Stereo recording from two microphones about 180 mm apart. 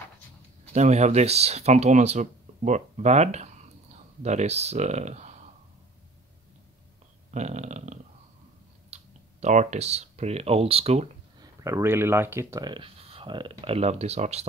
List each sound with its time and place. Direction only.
0.7 s speech: 40° right (ahead or behind)
7.2 s a sound: 40° right (ahead or behind)
8.9 s speech: 40° right (ahead or behind)
11.4 s speech: 15° right (ahead or behind); by 14.5 s 35° right (ahead or behind)